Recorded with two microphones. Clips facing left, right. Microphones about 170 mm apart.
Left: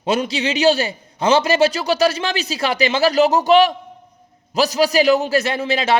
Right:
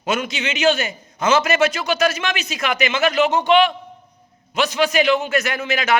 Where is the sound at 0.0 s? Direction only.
35° left (ahead or behind).